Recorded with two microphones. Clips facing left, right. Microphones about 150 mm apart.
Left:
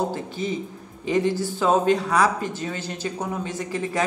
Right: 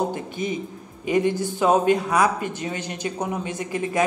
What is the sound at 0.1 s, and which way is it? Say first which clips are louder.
Speech: even; 15° right (ahead or behind).